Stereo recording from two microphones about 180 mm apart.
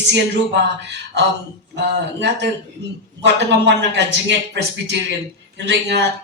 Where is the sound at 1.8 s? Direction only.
75° right (ahead or behind).